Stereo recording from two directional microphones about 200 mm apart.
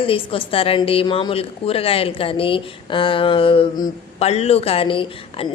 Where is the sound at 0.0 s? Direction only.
25° left (ahead or behind).